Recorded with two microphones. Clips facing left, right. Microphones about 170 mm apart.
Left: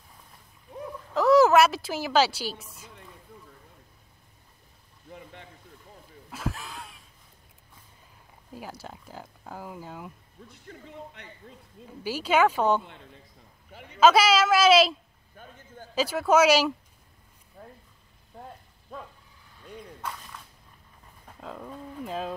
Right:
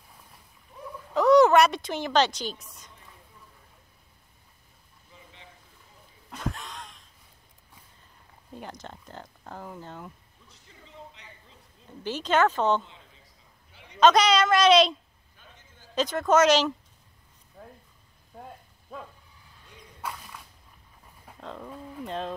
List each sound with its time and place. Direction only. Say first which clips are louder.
1.1 s a woman's voice: right 1 dB; centre (ahead or behind)
5.1 s a sound: left 8 dB; 55° left (ahead or behind)
6.3 s a sound: even; 5° left (ahead or behind)
8.5 s speech: even; 5° left (ahead or behind)
10.7 s speech: left 5 dB; 55° left (ahead or behind)
12.0 s speech: left 1 dB; 10° left (ahead or behind)
12.8 s a man's voice: left 6 dB; 60° left (ahead or behind)
13.7 s a sound: left 8 dB; 55° left (ahead or behind)
13.9 s speech: even; 5° left (ahead or behind)
15.3 s a sound: left 10 dB; 50° left (ahead or behind)
15.9 s speech: even; 5° left (ahead or behind)
18.9 s speech: even; 5° right (ahead or behind)
20.0 s creak: right 4 dB; 10° right (ahead or behind)
21.3 s speech: even; 5° left (ahead or behind)